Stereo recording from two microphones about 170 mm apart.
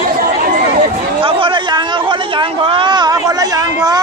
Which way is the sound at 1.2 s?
30° right (ahead or behind).